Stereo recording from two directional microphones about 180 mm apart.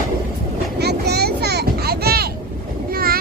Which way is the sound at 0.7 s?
65° right (ahead or behind).